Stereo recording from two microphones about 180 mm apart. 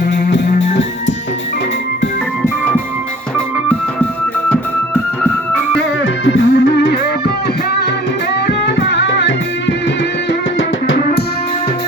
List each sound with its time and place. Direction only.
6.2 s music: 90° left
8.4 s music: 70° left (ahead or behind)
10.6 s music: 80° left